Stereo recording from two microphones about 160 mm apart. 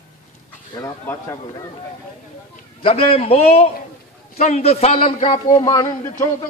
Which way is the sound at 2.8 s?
35° left (ahead or behind).